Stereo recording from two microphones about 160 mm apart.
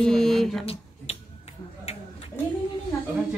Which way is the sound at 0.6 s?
40° left (ahead or behind).